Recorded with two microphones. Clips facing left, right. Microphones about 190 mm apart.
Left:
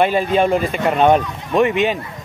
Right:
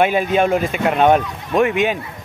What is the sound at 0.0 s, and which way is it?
A man's voice, 5° right (ahead or behind).